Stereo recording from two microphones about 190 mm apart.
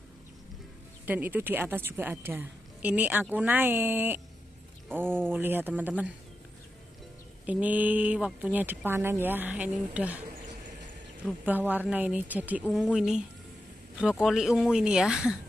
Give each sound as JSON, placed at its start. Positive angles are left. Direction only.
{"t": 1.0, "sound": "a woman's voice", "side_deg": -10}
{"t": 7.4, "sound": "a woman's voice", "side_deg": -10}
{"t": 11.2, "sound": "a woman's voice", "side_deg": -10}